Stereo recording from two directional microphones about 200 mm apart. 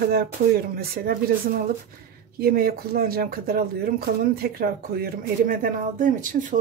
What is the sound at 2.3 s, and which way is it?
Speech, 50° right (ahead or behind).